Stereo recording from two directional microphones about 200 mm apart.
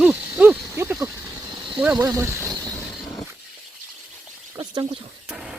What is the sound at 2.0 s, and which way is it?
Speech, 15° right (ahead or behind).